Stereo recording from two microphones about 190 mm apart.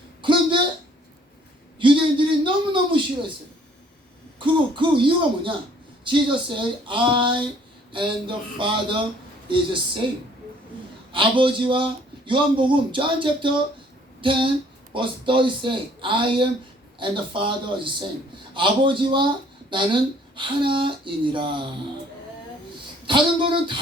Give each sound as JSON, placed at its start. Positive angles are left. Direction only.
{"t": 0.2, "sound": "a sound", "side_deg": -25}
{"t": 1.8, "sound": "speech", "side_deg": -25}
{"t": 4.4, "sound": "speech", "side_deg": -25}
{"t": 11.1, "sound": "speech", "side_deg": -25}
{"t": 18.5, "sound": "speech", "side_deg": -25}
{"t": 23.0, "sound": "speech", "side_deg": -25}